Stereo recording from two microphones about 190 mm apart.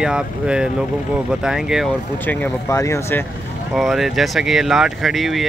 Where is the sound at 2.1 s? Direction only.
10° left (ahead or behind).